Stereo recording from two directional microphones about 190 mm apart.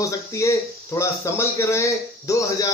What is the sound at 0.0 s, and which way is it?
Speech, 15° left (ahead or behind).